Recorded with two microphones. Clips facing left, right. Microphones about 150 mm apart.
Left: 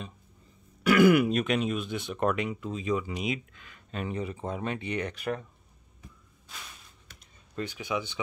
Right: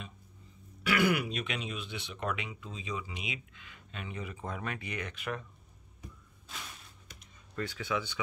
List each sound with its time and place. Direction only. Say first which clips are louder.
0.8 s speech: left 9 dB; 45° left (ahead or behind)
7.5 s speech: left 2 dB; 20° left (ahead or behind)